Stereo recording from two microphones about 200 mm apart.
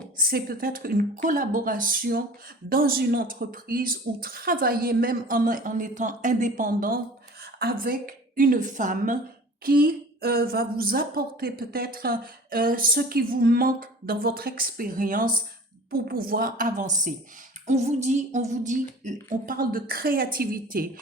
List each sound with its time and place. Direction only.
0.2 s a woman's voice: 45° right (ahead or behind)